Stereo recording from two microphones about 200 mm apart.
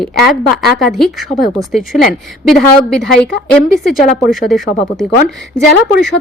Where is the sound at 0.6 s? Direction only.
Centre (ahead or behind).